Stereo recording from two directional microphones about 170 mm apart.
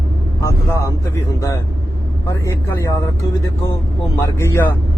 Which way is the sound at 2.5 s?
15° left (ahead or behind).